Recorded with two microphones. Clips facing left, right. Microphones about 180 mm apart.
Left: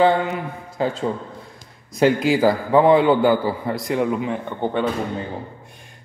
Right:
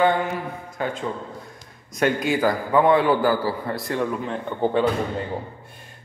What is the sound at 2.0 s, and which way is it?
A man's voice, 25° left (ahead or behind).